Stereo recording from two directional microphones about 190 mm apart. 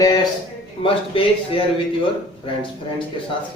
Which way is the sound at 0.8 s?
30° left (ahead or behind).